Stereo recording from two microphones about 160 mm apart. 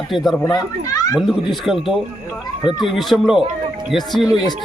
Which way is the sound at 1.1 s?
Centre (ahead or behind).